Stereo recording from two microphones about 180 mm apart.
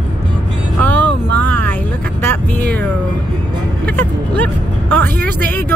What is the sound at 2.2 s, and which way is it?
Vehicle, 10° left (ahead or behind).